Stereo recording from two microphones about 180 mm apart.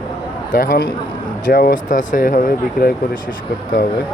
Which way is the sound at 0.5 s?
50° left (ahead or behind).